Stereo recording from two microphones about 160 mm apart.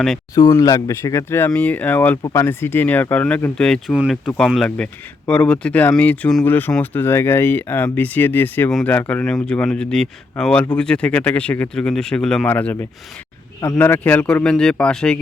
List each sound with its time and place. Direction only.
0.3 s speech: 25° left (ahead or behind); by 3.9 s 5° left (ahead or behind)
3.9 s speech: 5° right (ahead or behind)